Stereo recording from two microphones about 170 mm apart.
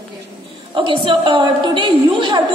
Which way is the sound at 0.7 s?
30° right (ahead or behind).